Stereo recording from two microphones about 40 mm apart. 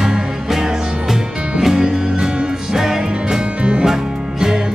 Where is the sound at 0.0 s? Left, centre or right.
Centre.